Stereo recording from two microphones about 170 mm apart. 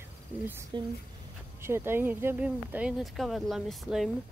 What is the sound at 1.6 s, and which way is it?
Speech, 15° right (ahead or behind).